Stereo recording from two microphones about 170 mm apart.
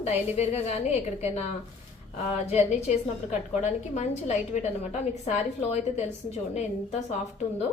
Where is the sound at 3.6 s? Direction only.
40° left (ahead or behind).